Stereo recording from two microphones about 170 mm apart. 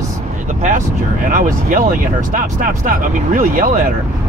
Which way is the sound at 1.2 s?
50° right (ahead or behind).